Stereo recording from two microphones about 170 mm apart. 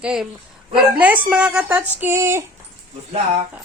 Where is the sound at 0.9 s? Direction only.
5° right (ahead or behind).